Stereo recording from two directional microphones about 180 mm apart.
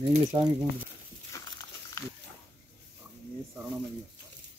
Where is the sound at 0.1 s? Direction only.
30° right (ahead or behind).